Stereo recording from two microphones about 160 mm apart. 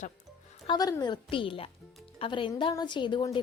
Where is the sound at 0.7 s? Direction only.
25° left (ahead or behind).